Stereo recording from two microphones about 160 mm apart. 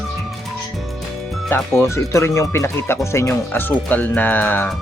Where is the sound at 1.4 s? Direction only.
15° left (ahead or behind).